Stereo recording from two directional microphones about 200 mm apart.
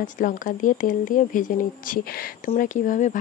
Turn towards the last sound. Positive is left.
turn(degrees=40)  # may be behind; listen again after turning